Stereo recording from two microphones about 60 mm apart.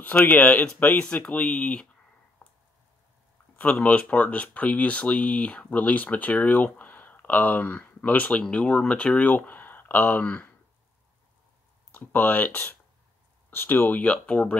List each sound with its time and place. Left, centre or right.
0.2 s speech: left
2.4 s a sound: left
3.5 s speech: left
11.9 s speech: left